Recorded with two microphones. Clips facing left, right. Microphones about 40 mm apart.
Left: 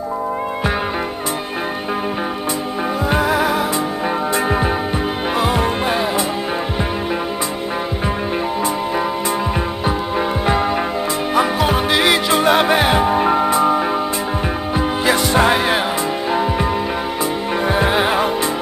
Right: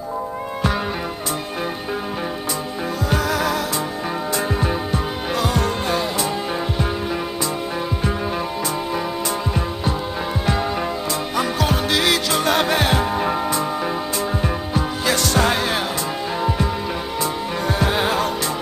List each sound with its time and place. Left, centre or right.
3.1 s music: left
10.4 s music: left
14.4 s music: left
16.3 s music: left
17.2 s music: left